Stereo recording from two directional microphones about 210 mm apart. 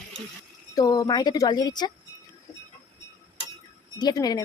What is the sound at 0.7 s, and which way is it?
A woman's voice, 15° left (ahead or behind).